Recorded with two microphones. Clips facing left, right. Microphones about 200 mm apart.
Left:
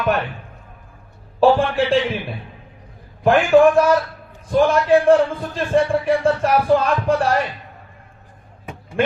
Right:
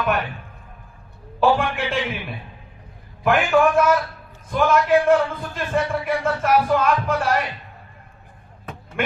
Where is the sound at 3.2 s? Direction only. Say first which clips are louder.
Left 5 dB; 30° left (ahead or behind).